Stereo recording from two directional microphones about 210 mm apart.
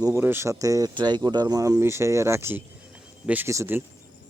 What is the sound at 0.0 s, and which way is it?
Speech, 10° right (ahead or behind).